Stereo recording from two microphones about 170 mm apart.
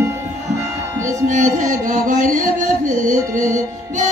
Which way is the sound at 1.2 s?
50° right (ahead or behind).